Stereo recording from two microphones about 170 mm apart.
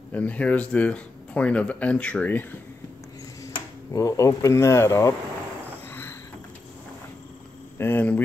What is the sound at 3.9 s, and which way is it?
Speech, 20° left (ahead or behind).